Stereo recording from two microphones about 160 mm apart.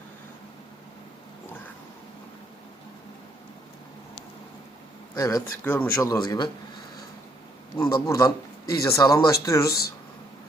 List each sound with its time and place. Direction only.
5.1 s speech: 20° left (ahead or behind)
7.9 s speech: 20° left (ahead or behind)